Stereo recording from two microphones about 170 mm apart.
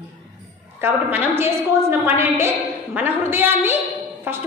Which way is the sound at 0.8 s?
10° right (ahead or behind).